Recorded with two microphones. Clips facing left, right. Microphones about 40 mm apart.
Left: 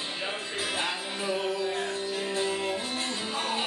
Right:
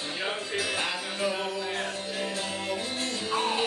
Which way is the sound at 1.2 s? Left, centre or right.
Right.